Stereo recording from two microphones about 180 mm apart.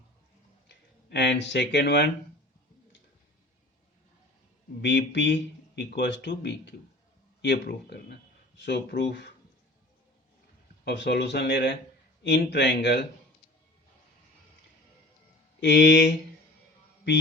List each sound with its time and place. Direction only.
0.7 s speech: 70° left (ahead or behind)
4.8 s speech: 75° left (ahead or behind)
10.8 s speech: 70° left (ahead or behind)
15.6 s speech: 75° left (ahead or behind)